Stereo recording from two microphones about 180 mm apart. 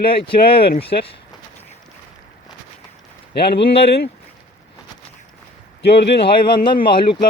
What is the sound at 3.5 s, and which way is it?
Speech, 30° left (ahead or behind).